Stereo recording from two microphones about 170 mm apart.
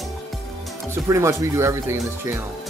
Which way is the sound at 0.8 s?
15° right (ahead or behind).